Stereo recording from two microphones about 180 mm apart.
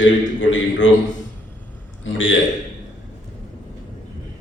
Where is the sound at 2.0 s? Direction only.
90° left.